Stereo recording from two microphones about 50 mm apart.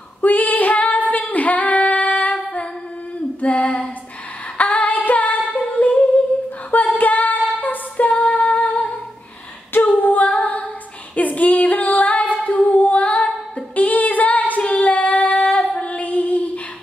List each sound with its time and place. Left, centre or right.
0.2 s female singing: left
3.3 s female singing: left
5.4 s singing: left
7.0 s female singing: left
12.4 s singing: left
13.7 s female singing: left